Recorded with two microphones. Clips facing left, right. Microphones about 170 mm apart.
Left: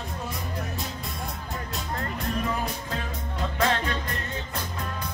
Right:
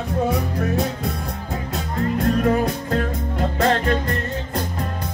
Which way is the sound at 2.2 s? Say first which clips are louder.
Right 11 dB; 60° right (ahead or behind).